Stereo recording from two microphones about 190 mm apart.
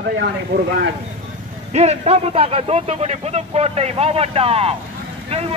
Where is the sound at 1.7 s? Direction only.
35° right (ahead or behind).